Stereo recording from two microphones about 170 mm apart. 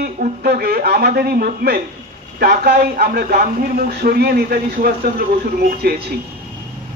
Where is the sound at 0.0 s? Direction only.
65° right (ahead or behind).